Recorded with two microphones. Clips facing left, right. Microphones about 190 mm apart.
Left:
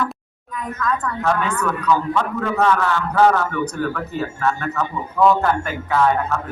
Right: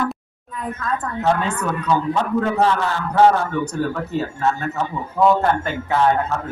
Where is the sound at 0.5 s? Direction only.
30° right (ahead or behind).